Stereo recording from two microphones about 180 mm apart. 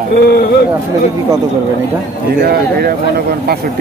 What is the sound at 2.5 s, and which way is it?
Speech, 60° right (ahead or behind).